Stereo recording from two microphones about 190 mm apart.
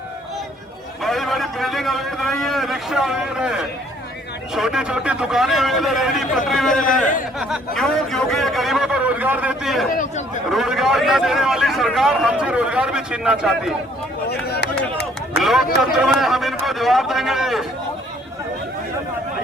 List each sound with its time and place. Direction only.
1.0 s a man's voice: centre (ahead or behind)
6.8 s speech: 45° left (ahead or behind)
7.8 s a man's voice: centre (ahead or behind)
14.3 s chatter: 55° left (ahead or behind)
15.4 s a man's voice: centre (ahead or behind)